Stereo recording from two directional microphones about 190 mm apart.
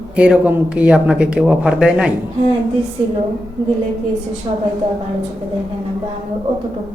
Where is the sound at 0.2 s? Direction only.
10° right (ahead or behind).